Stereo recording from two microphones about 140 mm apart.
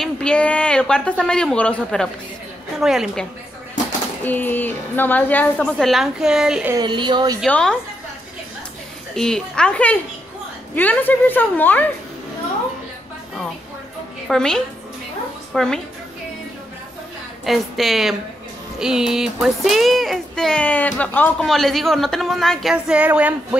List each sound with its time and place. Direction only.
0.0 s a woman's voice: 5° left (ahead or behind)
4.2 s a woman's voice: 15° left (ahead or behind); by 6.7 s 5° right (ahead or behind)
6.7 s a woman's voice: 30° right (ahead or behind)
7.4 s a woman's voice: 5° left (ahead or behind)
9.1 s a woman's voice: 5° left (ahead or behind)
14.2 s speech: 5° left (ahead or behind)
17.5 s speech: centre (ahead or behind)
21.5 s speech: centre (ahead or behind)